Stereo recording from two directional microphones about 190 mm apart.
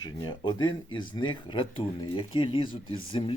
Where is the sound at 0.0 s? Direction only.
25° left (ahead or behind).